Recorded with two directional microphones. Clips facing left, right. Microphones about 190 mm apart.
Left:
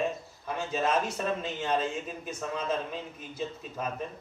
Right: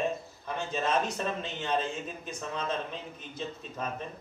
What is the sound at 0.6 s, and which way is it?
A man's voice, 5° left (ahead or behind).